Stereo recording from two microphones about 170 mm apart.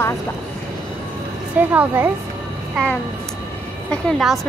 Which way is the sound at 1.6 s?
10° right (ahead or behind).